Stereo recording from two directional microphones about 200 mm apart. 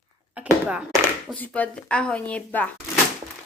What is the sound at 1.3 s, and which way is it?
A woman's voice, 10° left (ahead or behind).